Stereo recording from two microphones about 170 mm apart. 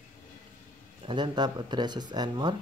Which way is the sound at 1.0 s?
25° right (ahead or behind).